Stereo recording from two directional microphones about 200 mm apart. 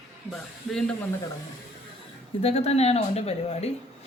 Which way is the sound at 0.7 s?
Centre (ahead or behind).